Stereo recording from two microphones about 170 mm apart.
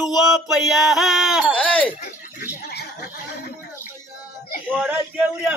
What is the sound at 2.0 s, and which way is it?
Speech, 60° left (ahead or behind).